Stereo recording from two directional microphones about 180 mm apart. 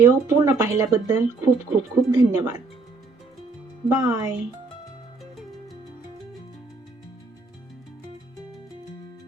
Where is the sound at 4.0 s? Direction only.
20° right (ahead or behind).